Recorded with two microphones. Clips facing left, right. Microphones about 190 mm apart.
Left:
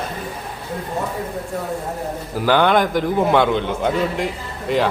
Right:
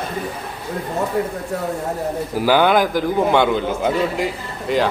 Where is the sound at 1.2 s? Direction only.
75° right (ahead or behind).